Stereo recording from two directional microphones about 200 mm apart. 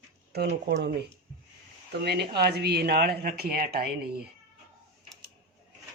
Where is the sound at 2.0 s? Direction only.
55° right (ahead or behind).